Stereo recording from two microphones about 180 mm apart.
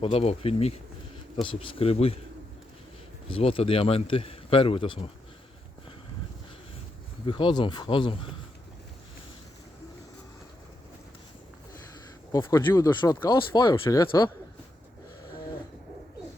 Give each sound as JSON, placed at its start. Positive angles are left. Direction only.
{"t": 0.0, "sound": "a man's voice", "side_deg": 35}
{"t": 3.2, "sound": "a man's voice", "side_deg": 30}
{"t": 7.3, "sound": "speech", "side_deg": 25}
{"t": 12.3, "sound": "speech", "side_deg": 20}